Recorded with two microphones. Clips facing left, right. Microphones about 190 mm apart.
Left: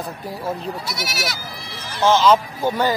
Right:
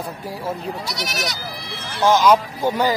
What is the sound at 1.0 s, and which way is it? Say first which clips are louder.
Speech: right 1 dB; 5° left (ahead or behind).